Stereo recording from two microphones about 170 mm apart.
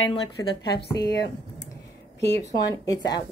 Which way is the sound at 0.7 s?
75° left (ahead or behind).